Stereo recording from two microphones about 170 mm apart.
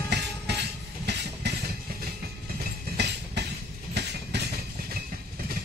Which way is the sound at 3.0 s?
85° right.